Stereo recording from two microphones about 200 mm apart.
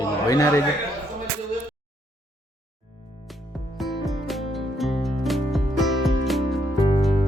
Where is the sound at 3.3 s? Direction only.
Centre (ahead or behind).